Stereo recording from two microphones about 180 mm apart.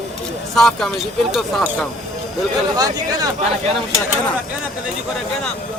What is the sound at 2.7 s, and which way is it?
Speech, 20° right (ahead or behind).